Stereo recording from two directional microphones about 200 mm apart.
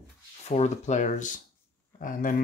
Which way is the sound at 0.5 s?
35° left (ahead or behind).